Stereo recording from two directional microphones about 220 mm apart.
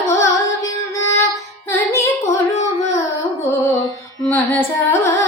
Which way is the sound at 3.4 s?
10° left (ahead or behind).